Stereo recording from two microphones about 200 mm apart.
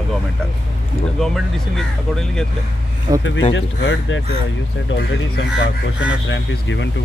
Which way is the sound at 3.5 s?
65° left (ahead or behind).